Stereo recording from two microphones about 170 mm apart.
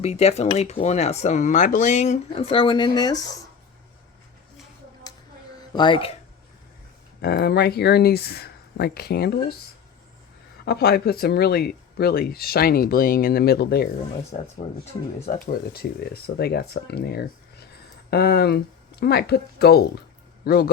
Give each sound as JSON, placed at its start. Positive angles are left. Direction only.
{"t": 0.0, "sound": "speech", "side_deg": 40}
{"t": 5.7, "sound": "speech", "side_deg": 30}
{"t": 7.2, "sound": "speech", "side_deg": 75}
{"t": 10.7, "sound": "speech", "side_deg": 70}
{"t": 14.3, "sound": "speech", "side_deg": 40}
{"t": 15.3, "sound": "speech", "side_deg": 60}